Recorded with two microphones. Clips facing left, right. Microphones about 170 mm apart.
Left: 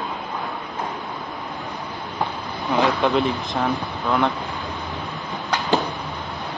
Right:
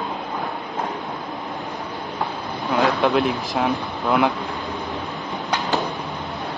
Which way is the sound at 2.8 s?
Centre (ahead or behind).